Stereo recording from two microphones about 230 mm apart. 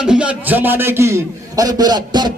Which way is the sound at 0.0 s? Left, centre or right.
Centre.